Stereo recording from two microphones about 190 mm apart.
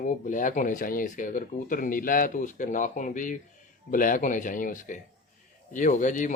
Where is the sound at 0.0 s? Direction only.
45° left (ahead or behind).